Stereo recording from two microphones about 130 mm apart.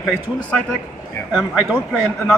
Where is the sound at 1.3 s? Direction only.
5° right (ahead or behind).